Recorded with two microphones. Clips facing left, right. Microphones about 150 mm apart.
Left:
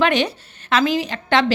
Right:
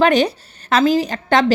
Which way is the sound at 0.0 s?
40° right (ahead or behind).